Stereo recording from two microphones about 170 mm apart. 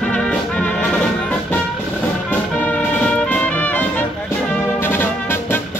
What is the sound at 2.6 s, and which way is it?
Music, 10° left (ahead or behind).